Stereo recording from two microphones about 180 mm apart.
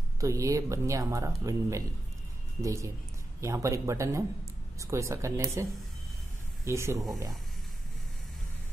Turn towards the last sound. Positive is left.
turn(degrees=-15)  # may be behind; listen again after turning